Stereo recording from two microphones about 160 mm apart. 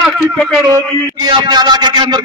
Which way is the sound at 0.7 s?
25° right (ahead or behind).